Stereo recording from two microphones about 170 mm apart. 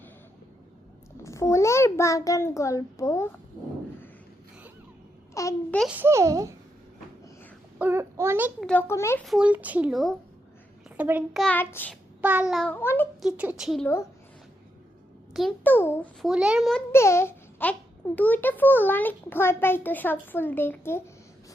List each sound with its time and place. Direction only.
1.2 s a child's voice: 15° left (ahead or behind)
5.3 s babbling: 20° left (ahead or behind)
5.9 s a child's voice: 15° right (ahead or behind)
7.8 s a child's voice: 15° right (ahead or behind)
8.6 s speech: 10° left (ahead or behind)
9.2 s a child's voice: 5° right (ahead or behind)
11.4 s speech: 10° left (ahead or behind)
12.2 s speech: 10° right (ahead or behind); by 13.1 s 10° left (ahead or behind)
13.2 s speech: 5° right (ahead or behind)
15.3 s a child's voice: centre (ahead or behind)
15.6 s speech: 10° left (ahead or behind)
16.2 s speech: 5° right (ahead or behind)
16.9 s speech: 15° left (ahead or behind)